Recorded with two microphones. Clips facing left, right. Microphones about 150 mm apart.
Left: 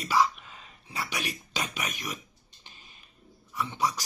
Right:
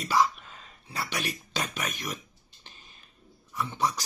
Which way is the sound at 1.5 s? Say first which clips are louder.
Right 1 dB; 15° left (ahead or behind).